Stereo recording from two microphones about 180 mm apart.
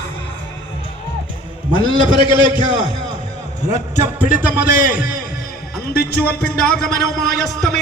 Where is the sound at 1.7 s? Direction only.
25° left (ahead or behind).